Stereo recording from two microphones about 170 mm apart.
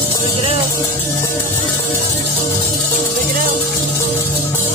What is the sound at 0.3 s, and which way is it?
Music, 30° right (ahead or behind).